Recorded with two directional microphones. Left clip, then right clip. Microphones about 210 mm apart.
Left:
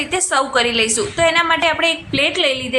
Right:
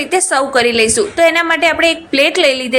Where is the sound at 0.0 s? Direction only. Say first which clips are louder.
Right 4 dB; 20° right (ahead or behind).